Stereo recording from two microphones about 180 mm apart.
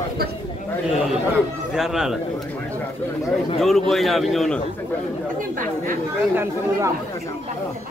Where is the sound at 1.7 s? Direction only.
Centre (ahead or behind).